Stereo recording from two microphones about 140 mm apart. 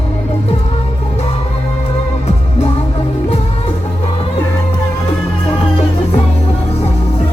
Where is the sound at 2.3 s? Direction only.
45° left (ahead or behind).